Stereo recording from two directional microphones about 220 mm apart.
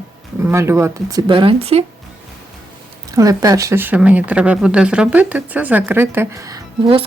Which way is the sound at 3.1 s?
15° right (ahead or behind).